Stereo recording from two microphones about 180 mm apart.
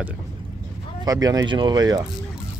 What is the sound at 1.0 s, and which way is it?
Speech, 20° right (ahead or behind).